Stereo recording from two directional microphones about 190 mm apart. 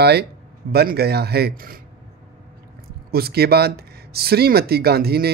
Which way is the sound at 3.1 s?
55° right (ahead or behind).